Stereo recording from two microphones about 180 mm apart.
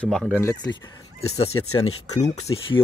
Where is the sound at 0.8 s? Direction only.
30° left (ahead or behind).